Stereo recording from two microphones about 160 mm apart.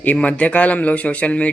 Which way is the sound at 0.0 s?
10° left (ahead or behind).